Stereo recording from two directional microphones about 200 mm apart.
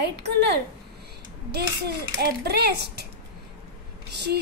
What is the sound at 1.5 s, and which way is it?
A woman's voice, 55° right (ahead or behind).